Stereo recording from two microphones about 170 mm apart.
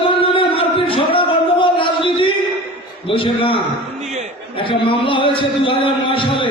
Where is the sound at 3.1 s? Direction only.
30° left (ahead or behind).